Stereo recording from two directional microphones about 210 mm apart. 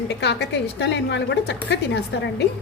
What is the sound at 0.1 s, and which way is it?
A woman's voice, 55° left (ahead or behind).